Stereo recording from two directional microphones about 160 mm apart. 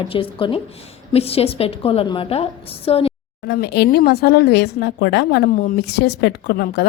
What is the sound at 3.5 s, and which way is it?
A woman's voice, 90° left.